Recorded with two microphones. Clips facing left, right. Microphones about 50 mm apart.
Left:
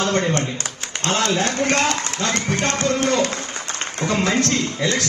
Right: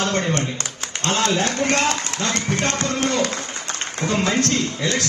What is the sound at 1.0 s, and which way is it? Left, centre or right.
A man's voice, left.